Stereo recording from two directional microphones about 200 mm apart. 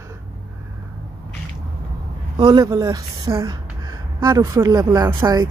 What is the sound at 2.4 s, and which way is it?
A woman's voice, 20° right (ahead or behind).